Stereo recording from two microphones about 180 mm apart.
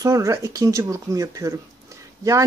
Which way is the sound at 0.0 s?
15° right (ahead or behind).